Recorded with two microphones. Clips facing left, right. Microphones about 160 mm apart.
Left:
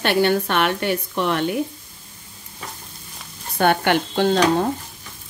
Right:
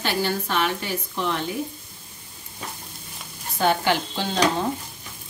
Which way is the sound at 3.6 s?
60° left (ahead or behind).